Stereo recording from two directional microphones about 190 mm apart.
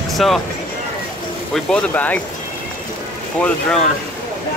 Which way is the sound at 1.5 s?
5° left (ahead or behind).